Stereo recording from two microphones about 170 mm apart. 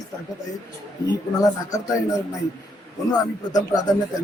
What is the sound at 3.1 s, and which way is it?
Speech, 20° left (ahead or behind).